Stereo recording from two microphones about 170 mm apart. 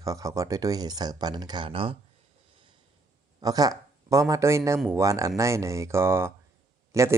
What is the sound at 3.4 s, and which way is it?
Speech, 20° right (ahead or behind).